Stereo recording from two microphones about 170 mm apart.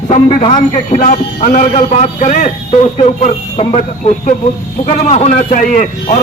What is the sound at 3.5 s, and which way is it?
A man's voice, 35° left (ahead or behind).